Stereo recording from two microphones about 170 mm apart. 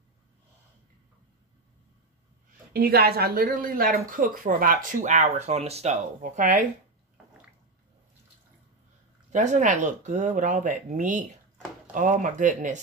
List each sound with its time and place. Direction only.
2.7 s speech: 65° right (ahead or behind); by 6.7 s 45° right (ahead or behind)
9.3 s speech: 45° right (ahead or behind)